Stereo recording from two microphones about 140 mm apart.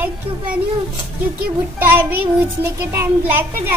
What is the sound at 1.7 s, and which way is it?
A child's voice, 15° right (ahead or behind).